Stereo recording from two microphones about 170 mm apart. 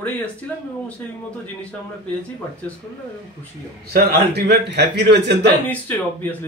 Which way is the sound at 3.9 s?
75° right (ahead or behind).